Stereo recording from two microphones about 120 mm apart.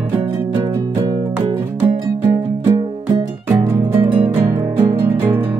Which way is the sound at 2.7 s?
40° right (ahead or behind).